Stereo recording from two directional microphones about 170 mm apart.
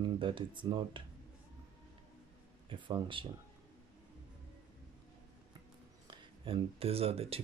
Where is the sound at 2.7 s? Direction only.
30° right (ahead or behind).